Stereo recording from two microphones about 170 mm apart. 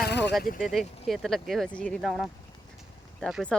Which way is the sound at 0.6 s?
Centre (ahead or behind).